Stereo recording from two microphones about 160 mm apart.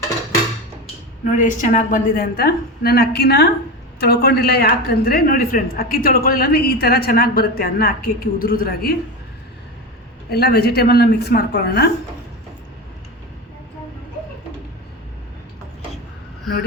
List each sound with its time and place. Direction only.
1.2 s a woman's voice: 50° left (ahead or behind)
10.2 s a woman's voice: 85° left